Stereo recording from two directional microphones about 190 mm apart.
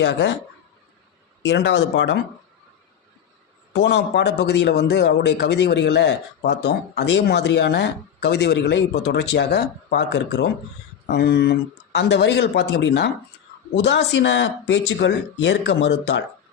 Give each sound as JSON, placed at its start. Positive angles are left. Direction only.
{"t": 0.0, "sound": "speech", "side_deg": 70}
{"t": 1.4, "sound": "speech", "side_deg": 65}
{"t": 3.7, "sound": "speech", "side_deg": 65}